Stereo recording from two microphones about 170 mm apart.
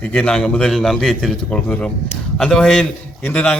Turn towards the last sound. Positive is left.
turn(degrees=10)  # may be behind; listen again after turning